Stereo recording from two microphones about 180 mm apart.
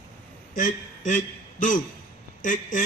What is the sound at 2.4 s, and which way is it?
Speech, 45° left (ahead or behind).